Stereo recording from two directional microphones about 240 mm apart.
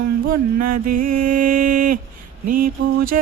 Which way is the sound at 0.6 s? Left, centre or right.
Right.